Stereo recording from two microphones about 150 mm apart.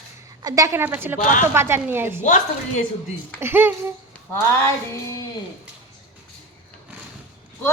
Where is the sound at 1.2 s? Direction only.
60° left (ahead or behind).